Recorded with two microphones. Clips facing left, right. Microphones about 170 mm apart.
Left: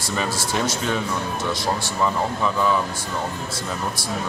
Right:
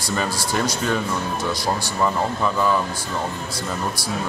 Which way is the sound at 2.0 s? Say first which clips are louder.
Right 1 dB; centre (ahead or behind).